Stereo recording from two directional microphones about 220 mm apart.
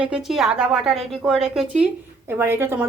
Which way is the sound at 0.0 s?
5° right (ahead or behind).